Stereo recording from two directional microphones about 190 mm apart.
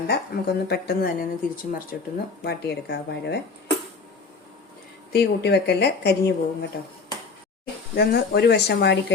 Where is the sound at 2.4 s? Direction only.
60° left (ahead or behind).